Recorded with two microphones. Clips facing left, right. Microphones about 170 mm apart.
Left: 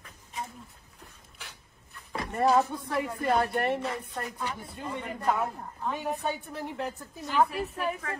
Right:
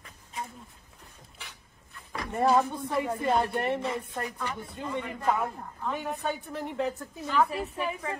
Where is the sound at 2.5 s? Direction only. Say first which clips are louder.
Even; centre (ahead or behind).